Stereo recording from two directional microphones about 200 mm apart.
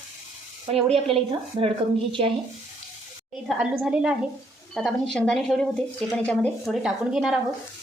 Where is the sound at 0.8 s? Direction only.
30° right (ahead or behind).